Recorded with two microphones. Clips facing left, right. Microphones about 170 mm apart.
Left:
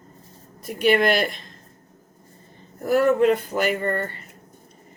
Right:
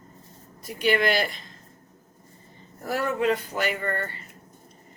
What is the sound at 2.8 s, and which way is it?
Speech, 50° left (ahead or behind).